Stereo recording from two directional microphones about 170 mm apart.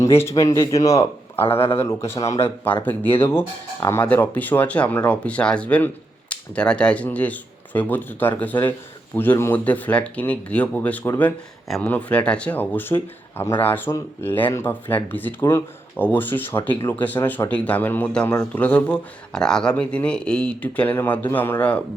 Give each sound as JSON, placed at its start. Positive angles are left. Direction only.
{"t": 0.0, "sound": "speech", "side_deg": 15}